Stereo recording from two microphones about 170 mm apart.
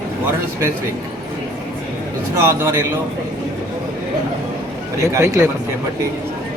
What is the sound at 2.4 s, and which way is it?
Speech, 15° right (ahead or behind).